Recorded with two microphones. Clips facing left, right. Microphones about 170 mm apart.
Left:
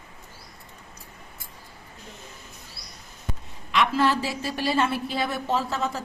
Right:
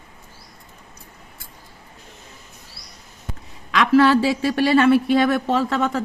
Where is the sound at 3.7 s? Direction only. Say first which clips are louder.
Right 7 dB; 90° right.